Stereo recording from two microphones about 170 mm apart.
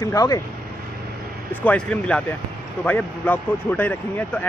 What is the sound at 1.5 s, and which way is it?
A man's voice, 10° left (ahead or behind).